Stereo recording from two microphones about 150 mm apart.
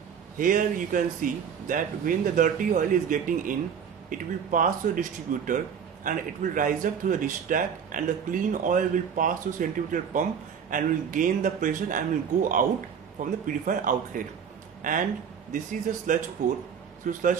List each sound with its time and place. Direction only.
0.4 s speech: 65° right (ahead or behind)